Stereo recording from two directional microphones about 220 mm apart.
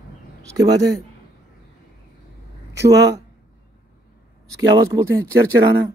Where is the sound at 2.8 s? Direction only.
50° right (ahead or behind).